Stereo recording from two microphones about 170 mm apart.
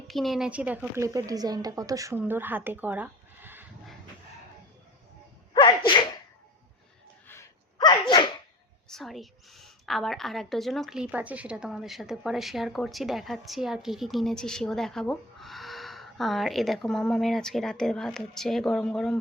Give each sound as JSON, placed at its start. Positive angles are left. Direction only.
{"t": 0.1, "sound": "speech", "side_deg": 0}
{"t": 5.5, "sound": "sneeze", "side_deg": 25}
{"t": 7.8, "sound": "dog", "side_deg": 25}
{"t": 8.9, "sound": "a woman's voice", "side_deg": 0}